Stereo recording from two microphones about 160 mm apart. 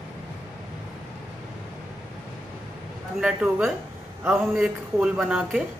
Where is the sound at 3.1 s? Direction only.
5° right (ahead or behind).